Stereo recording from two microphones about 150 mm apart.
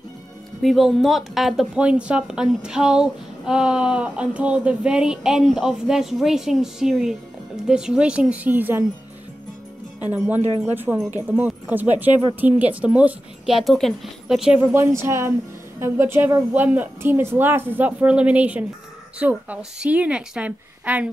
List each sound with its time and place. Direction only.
0.6 s a woman's voice: centre (ahead or behind)
10.1 s a woman's voice: 10° right (ahead or behind)
14.6 s a woman's voice: 15° right (ahead or behind)